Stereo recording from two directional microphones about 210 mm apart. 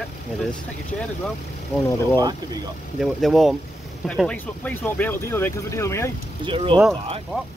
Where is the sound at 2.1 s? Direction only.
20° right (ahead or behind).